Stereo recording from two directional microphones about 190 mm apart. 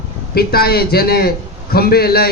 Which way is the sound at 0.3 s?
55° left (ahead or behind).